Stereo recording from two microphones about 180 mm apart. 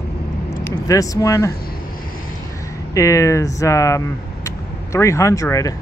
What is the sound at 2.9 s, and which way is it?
Speech, 15° left (ahead or behind).